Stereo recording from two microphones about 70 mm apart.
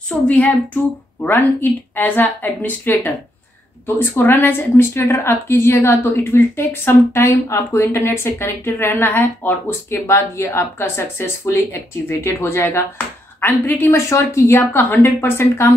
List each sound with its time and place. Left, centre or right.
0.3 s a woman's voice: centre; by 15.7 s left